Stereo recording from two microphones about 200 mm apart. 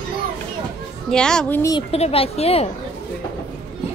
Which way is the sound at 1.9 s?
30° left (ahead or behind).